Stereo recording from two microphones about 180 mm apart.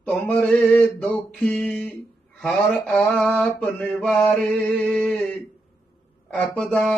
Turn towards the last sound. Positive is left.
turn(degrees=5)  # may be behind; listen again after turning